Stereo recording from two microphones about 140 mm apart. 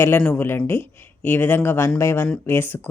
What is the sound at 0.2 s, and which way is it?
Speech, 10° left (ahead or behind).